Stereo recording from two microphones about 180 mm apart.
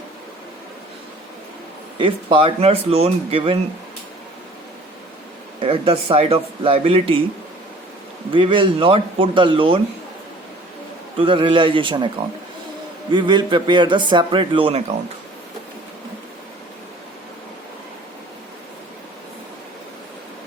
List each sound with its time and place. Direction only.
2.0 s speech: 30° right (ahead or behind)
5.5 s speech: 30° right (ahead or behind)
8.3 s speech: 25° right (ahead or behind)
11.2 s speech: 25° right (ahead or behind)
13.1 s speech: 25° right (ahead or behind)